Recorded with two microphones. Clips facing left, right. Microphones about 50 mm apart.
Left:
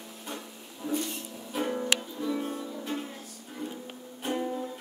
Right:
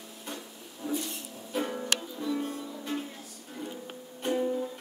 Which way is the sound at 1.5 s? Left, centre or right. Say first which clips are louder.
Left 2 dB; centre.